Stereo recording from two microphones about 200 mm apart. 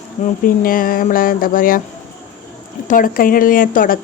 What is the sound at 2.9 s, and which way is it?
Speech, 45° left (ahead or behind).